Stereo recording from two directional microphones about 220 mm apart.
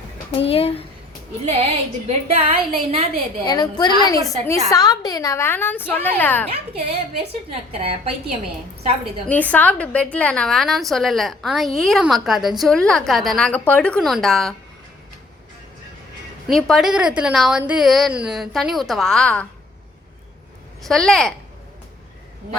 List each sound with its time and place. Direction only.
0.4 s speech: 25° left (ahead or behind)
2.0 s a woman's voice: 25° right (ahead or behind)
3.4 s a woman's voice: 20° left (ahead or behind)
6.5 s a woman's voice: 30° right (ahead or behind)
9.2 s a woman's voice: 5° left (ahead or behind)
16.5 s a woman's voice: centre (ahead or behind)
20.8 s a woman's voice: centre (ahead or behind)